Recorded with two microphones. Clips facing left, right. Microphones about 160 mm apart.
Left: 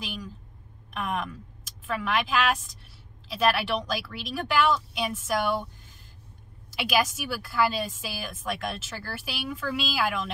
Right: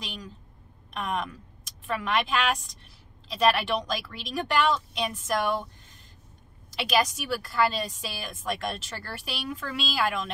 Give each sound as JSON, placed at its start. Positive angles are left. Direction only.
{"t": 0.0, "sound": "a sound", "side_deg": 5}
{"t": 0.9, "sound": "speech", "side_deg": 5}
{"t": 6.7, "sound": "speech", "side_deg": 5}